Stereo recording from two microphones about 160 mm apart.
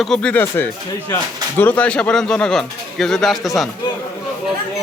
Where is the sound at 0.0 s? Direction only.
5° left (ahead or behind).